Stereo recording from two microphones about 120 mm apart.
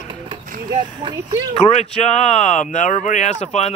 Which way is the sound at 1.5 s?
60° left (ahead or behind).